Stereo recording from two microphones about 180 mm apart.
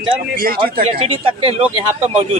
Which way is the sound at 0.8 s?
30° right (ahead or behind).